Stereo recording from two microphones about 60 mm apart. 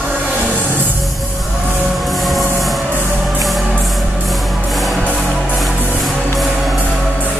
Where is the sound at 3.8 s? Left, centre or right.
Centre.